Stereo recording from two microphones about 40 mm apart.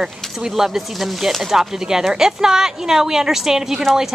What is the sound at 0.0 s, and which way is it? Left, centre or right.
Speech, centre.